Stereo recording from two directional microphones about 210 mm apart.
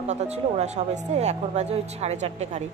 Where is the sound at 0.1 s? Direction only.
30° right (ahead or behind).